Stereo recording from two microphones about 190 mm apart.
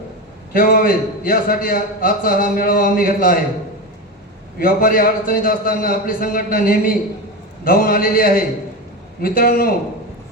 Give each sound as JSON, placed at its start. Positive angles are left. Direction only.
{"t": 0.5, "sound": "a man's voice", "side_deg": 50}
{"t": 4.6, "sound": "a man's voice", "side_deg": 50}